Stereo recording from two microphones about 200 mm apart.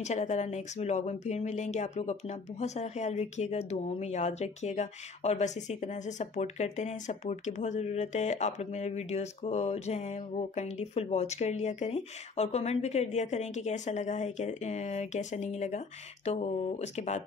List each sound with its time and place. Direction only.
0.0 s speech: 35° left (ahead or behind)